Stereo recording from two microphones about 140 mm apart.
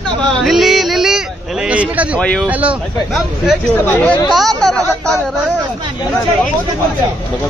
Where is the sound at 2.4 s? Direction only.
10° right (ahead or behind).